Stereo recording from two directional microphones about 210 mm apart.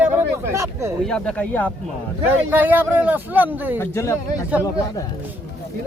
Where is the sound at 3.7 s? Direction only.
10° left (ahead or behind).